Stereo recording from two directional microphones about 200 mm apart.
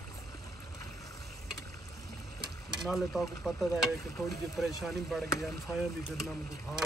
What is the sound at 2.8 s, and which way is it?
Speech, centre (ahead or behind).